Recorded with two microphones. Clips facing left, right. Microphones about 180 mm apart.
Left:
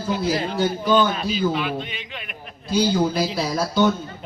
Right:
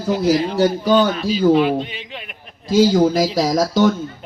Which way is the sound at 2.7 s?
90° right.